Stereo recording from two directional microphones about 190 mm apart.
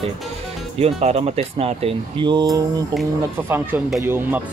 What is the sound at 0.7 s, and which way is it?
Speech, 35° right (ahead or behind).